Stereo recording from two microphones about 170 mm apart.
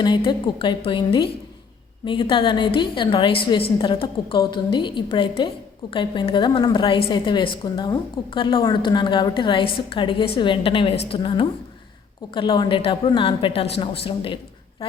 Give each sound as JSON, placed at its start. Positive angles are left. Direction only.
{"t": 0.0, "sound": "a woman's voice", "side_deg": 25}